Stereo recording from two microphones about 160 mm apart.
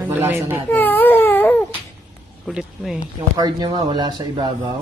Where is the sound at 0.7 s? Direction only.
10° left (ahead or behind).